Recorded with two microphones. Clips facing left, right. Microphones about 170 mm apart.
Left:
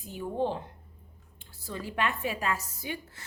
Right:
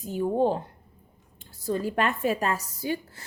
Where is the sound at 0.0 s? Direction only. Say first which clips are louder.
Right 7 dB; 40° right (ahead or behind).